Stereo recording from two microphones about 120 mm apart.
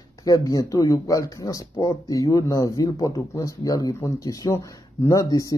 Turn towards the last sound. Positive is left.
turn(degrees=30)  # may be behind; listen again after turning